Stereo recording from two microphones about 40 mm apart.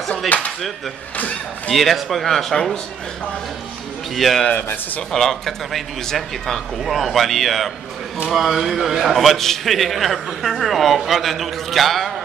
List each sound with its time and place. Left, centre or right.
0.3 s speech: left
1.7 s a man's voice: centre
2.5 s speech: centre
4.1 s a man's voice: centre